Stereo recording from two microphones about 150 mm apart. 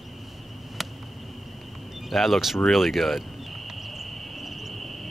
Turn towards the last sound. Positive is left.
turn(degrees=0)  # may be behind; listen again after turning